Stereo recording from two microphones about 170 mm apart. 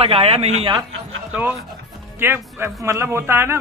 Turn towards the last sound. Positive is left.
turn(degrees=-15)  # may be behind; listen again after turning